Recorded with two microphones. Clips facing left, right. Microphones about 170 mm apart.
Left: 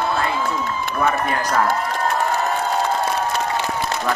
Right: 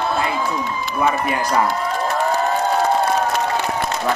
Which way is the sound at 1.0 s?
10° right (ahead or behind).